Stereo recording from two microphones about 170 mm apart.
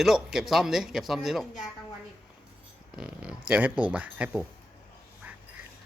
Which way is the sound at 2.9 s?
5° right (ahead or behind).